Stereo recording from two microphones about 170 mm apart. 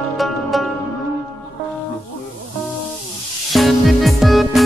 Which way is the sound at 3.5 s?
Centre (ahead or behind).